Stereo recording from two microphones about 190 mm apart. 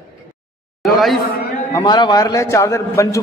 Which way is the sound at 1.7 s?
20° left (ahead or behind).